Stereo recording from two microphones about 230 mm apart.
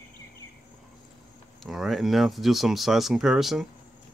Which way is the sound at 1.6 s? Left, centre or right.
Centre.